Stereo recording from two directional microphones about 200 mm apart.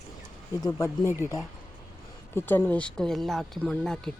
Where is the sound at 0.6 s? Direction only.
20° left (ahead or behind).